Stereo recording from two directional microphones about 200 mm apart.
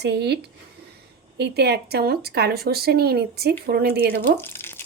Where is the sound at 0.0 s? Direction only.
55° right (ahead or behind).